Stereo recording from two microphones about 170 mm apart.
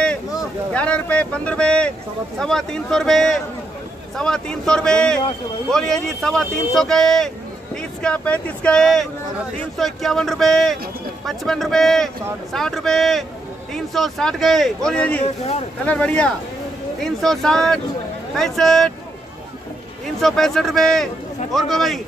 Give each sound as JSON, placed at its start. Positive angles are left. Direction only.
{"t": 0.7, "sound": "speech", "side_deg": 5}
{"t": 15.2, "sound": "speech", "side_deg": 40}
{"t": 15.8, "sound": "speech", "side_deg": 10}
{"t": 20.2, "sound": "speech", "side_deg": 0}